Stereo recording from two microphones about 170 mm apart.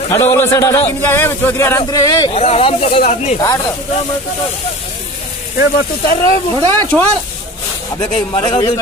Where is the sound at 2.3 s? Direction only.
40° left (ahead or behind).